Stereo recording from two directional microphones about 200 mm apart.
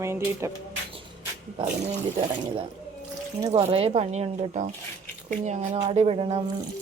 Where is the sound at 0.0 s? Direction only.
15° right (ahead or behind).